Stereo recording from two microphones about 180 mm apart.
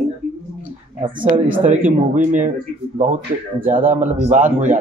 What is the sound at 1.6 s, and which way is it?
Speech, 45° right (ahead or behind).